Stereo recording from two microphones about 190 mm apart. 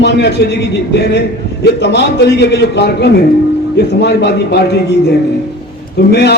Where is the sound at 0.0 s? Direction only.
65° left (ahead or behind).